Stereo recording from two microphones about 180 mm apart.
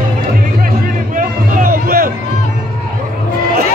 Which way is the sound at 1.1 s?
50° right (ahead or behind).